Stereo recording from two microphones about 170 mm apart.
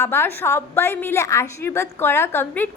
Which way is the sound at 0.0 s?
15° left (ahead or behind).